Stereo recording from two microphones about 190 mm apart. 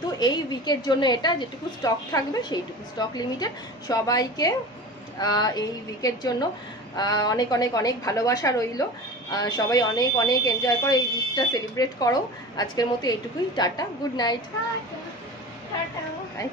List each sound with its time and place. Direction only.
0.2 s speech: 20° left (ahead or behind)